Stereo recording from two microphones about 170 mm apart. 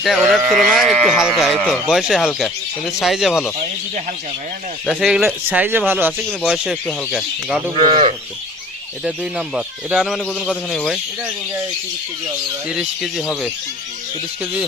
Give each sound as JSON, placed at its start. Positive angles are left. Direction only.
{"t": 0.0, "sound": "speech", "side_deg": 0}
{"t": 4.9, "sound": "speech", "side_deg": 0}
{"t": 7.8, "sound": "a man's voice", "side_deg": -40}
{"t": 9.6, "sound": "speech", "side_deg": -5}
{"t": 12.6, "sound": "speech", "side_deg": -5}